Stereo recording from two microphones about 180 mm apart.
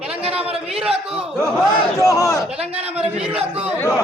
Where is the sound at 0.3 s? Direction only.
5° right (ahead or behind).